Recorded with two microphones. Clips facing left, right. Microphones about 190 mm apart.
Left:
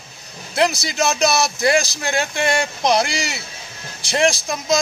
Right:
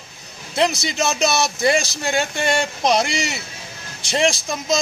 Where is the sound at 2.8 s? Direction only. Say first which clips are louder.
Left 1 dB; centre (ahead or behind).